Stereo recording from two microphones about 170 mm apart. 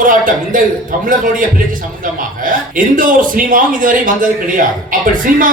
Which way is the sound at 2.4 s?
55° right (ahead or behind).